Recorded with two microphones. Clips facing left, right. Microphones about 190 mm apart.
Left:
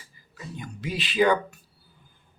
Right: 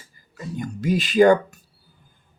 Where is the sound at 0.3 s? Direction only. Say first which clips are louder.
Right 8 dB; 45° right (ahead or behind).